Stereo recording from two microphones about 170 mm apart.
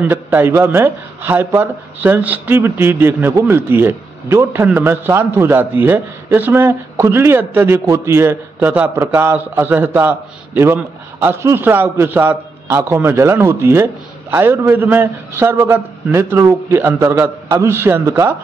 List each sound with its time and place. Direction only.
0.0 s speech: 10° right (ahead or behind)